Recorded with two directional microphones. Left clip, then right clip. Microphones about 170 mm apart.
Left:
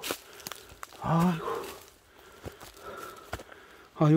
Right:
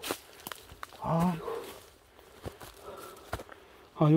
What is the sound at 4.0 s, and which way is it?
Speech, 20° left (ahead or behind).